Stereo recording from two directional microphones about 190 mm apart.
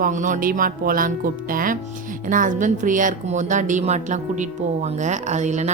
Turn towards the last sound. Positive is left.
turn(degrees=-40)  # may be behind; listen again after turning